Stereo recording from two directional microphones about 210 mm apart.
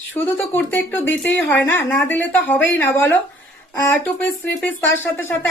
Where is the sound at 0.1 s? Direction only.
10° left (ahead or behind).